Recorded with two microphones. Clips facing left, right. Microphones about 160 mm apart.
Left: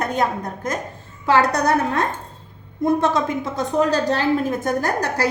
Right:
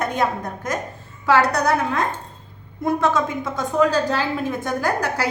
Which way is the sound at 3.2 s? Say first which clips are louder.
Left 1 dB; 35° left (ahead or behind).